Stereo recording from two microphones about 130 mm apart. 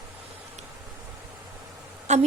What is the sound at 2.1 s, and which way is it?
Speech, 60° right (ahead or behind).